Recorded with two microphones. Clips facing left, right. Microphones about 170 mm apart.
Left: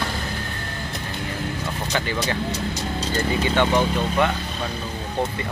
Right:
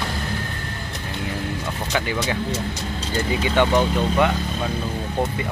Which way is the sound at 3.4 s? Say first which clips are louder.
Right 2 dB; 15° right (ahead or behind).